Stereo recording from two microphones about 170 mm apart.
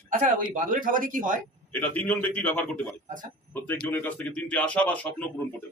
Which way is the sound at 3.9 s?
10° left (ahead or behind).